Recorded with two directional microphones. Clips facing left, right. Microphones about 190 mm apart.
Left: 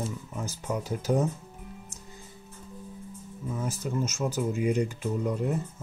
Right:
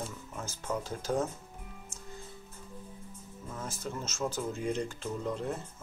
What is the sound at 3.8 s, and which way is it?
Speech, 15° left (ahead or behind).